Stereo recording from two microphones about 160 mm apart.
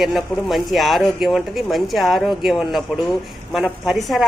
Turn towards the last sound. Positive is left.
turn(degrees=0)  # may be behind; listen again after turning